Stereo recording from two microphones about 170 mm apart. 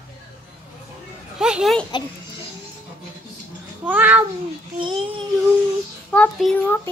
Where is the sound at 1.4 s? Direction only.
Centre (ahead or behind).